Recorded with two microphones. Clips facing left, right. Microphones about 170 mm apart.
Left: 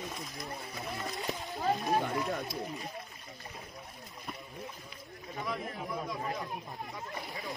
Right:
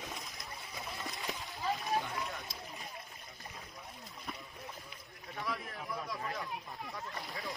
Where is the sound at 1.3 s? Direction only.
40° left (ahead or behind).